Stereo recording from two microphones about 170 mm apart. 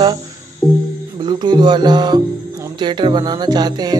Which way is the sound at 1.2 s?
25° right (ahead or behind).